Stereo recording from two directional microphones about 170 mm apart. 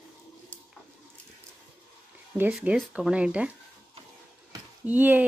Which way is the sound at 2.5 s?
Centre (ahead or behind).